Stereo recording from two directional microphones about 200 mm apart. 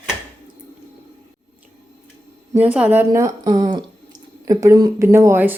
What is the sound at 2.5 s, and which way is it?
Speech, 5° right (ahead or behind).